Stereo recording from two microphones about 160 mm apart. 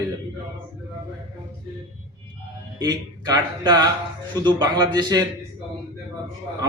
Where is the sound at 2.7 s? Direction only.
25° right (ahead or behind).